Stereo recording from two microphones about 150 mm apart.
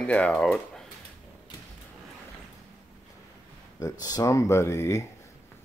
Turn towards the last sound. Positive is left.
turn(degrees=20)  # may be behind; listen again after turning